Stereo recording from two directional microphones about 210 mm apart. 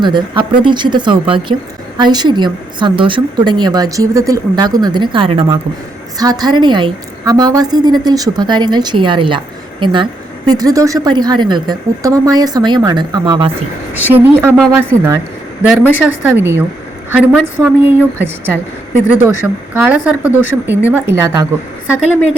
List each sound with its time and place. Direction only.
0.0 s speech: 20° right (ahead or behind)
14.1 s a woman's voice: 10° right (ahead or behind)